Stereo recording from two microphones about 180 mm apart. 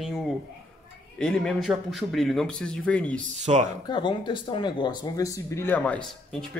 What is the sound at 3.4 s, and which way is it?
Speech, 40° right (ahead or behind).